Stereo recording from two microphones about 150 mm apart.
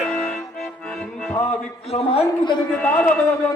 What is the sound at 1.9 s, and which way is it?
Speech, 40° left (ahead or behind).